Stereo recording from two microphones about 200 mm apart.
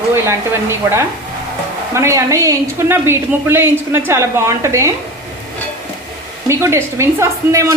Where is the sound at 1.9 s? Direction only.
15° right (ahead or behind).